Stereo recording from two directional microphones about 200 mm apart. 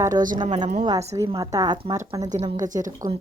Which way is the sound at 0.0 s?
15° right (ahead or behind).